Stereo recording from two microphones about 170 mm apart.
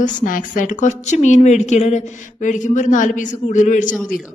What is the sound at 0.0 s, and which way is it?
A woman's voice, 50° left (ahead or behind).